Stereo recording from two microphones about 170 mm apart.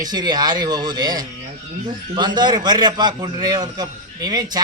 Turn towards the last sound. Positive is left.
turn(degrees=-25)  # may be behind; listen again after turning